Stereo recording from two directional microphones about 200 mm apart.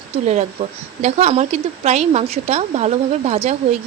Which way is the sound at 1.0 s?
35° right (ahead or behind).